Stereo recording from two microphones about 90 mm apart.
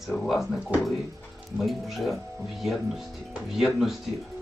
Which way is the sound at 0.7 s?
15° right (ahead or behind).